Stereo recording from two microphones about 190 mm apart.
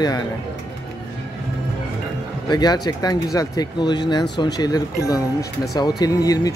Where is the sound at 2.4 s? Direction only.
20° left (ahead or behind).